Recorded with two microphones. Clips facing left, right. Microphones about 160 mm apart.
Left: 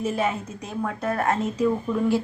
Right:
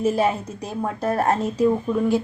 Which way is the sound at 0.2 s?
35° right (ahead or behind).